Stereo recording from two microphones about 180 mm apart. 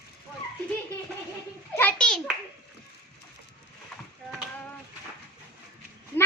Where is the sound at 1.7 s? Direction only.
10° left (ahead or behind).